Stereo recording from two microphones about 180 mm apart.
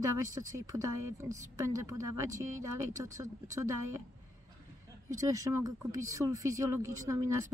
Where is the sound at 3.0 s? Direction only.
15° right (ahead or behind).